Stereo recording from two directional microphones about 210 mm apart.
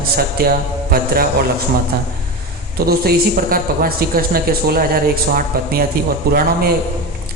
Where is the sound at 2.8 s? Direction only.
45° right (ahead or behind).